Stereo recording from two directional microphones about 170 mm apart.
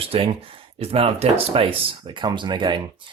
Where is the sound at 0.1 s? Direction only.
35° right (ahead or behind).